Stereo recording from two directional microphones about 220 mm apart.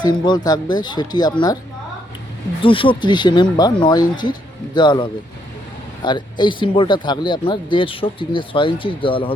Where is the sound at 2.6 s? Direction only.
25° left (ahead or behind).